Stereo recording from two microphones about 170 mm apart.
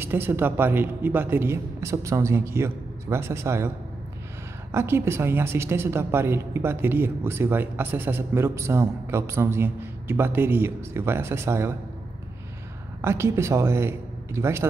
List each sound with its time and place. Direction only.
0.0 s a woman's voice: 10° right (ahead or behind)
4.7 s a woman's voice: 15° right (ahead or behind)
13.0 s a woman's voice: 15° right (ahead or behind)